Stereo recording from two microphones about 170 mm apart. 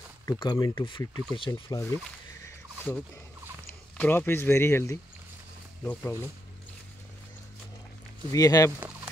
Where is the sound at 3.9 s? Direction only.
10° left (ahead or behind).